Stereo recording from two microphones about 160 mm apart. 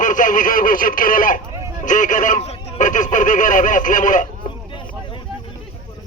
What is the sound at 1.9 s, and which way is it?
Speech, 55° left (ahead or behind).